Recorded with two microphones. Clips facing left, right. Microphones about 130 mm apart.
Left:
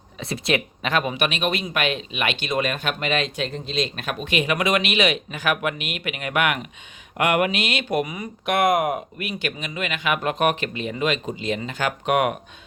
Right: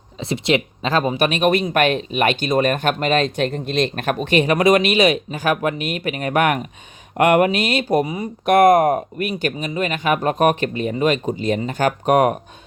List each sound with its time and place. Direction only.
0.2 s speech: 25° right (ahead or behind)
8.4 s speech: 45° right (ahead or behind)